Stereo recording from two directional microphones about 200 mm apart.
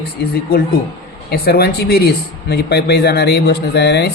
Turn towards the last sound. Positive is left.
turn(degrees=55)  # may be behind; listen again after turning